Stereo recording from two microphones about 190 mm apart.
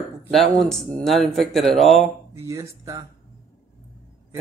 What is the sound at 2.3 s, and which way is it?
Speech, 15° right (ahead or behind).